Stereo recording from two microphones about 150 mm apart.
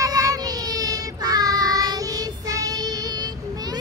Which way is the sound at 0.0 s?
25° right (ahead or behind).